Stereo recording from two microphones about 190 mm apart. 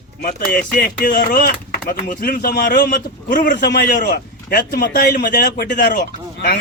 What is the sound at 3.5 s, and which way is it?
A man's voice, 65° left (ahead or behind).